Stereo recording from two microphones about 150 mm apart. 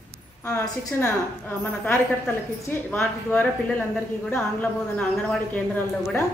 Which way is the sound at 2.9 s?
10° left (ahead or behind).